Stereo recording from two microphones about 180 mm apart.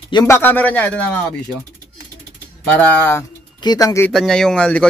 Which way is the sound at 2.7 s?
10° left (ahead or behind).